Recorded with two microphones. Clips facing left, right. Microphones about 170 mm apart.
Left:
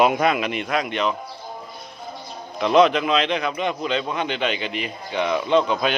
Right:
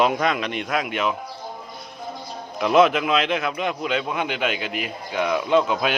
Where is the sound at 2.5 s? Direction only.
5° right (ahead or behind).